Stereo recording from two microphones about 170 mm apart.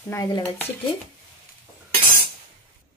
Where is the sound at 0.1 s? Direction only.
15° left (ahead or behind).